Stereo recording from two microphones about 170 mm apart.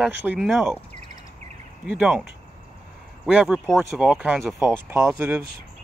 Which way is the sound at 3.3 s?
5° right (ahead or behind).